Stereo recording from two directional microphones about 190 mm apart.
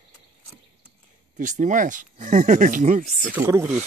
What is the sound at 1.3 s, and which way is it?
Speech, 40° right (ahead or behind).